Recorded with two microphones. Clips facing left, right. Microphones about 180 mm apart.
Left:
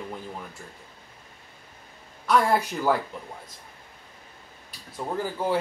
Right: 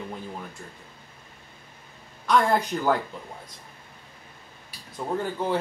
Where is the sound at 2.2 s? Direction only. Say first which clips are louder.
Even; 5° left (ahead or behind).